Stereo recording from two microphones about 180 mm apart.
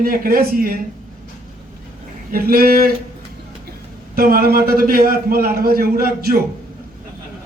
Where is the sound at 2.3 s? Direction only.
55° right (ahead or behind).